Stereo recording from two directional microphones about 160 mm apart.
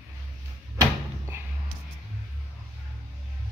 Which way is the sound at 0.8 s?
15° right (ahead or behind).